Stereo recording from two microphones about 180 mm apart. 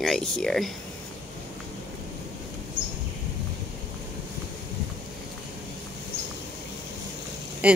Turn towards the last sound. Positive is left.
turn(degrees=-10)  # may be behind; listen again after turning